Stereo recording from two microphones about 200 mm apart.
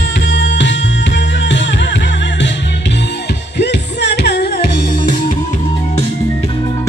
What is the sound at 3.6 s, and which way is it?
Music, 60° left (ahead or behind).